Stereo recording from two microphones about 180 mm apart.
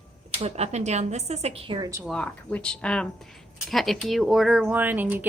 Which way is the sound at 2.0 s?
5° left (ahead or behind).